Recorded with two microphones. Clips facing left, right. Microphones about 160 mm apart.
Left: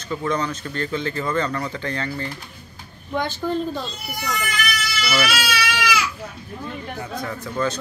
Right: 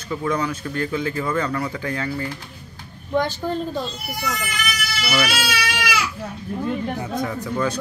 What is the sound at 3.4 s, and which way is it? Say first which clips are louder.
Speech: left 1 dB; 15° right (ahead or behind).